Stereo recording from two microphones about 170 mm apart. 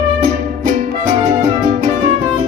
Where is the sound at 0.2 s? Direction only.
50° right (ahead or behind).